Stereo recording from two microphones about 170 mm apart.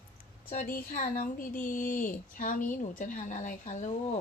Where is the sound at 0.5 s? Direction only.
50° left (ahead or behind).